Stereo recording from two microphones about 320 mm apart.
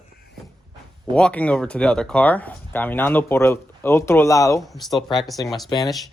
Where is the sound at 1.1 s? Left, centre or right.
Centre.